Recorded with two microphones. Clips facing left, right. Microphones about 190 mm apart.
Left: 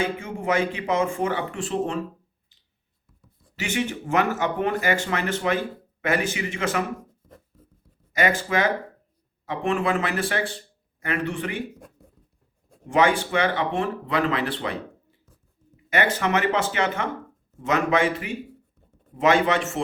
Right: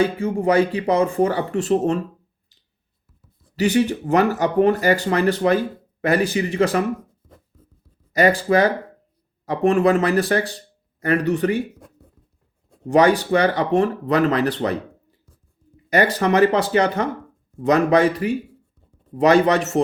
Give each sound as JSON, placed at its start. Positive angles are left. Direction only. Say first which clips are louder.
{"t": 0.0, "sound": "speech", "louder": "right 8 dB", "side_deg": -35}
{"t": 3.5, "sound": "speech", "louder": "right 9 dB", "side_deg": -35}
{"t": 8.1, "sound": "speech", "louder": "right 7 dB", "side_deg": -35}
{"t": 12.9, "sound": "speech", "louder": "right 5 dB", "side_deg": -40}
{"t": 15.9, "sound": "speech", "louder": "right 5 dB", "side_deg": -35}